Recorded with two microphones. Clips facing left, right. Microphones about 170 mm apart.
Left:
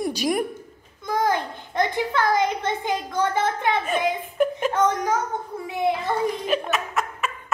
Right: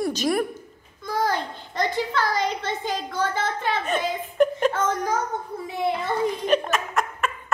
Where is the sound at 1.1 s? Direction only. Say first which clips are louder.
Left 2 dB; 15° left (ahead or behind).